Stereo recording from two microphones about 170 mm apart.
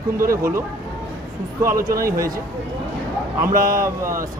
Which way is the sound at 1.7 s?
55° right (ahead or behind).